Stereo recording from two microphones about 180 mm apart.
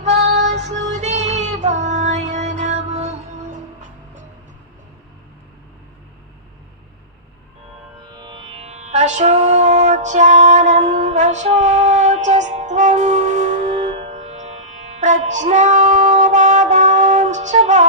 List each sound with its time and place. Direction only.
0.0 s music: 40° right (ahead or behind)
8.0 s music: 25° right (ahead or behind); by 17.8 s 40° right (ahead or behind)